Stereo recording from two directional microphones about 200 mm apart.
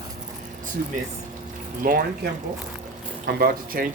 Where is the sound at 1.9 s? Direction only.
45° right (ahead or behind).